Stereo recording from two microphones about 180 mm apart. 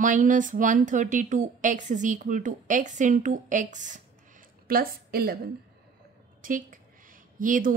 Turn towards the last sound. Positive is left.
turn(degrees=-45)  # may be behind; listen again after turning